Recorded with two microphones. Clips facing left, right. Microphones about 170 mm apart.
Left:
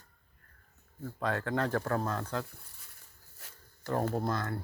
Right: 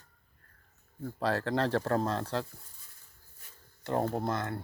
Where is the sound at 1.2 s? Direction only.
35° right (ahead or behind).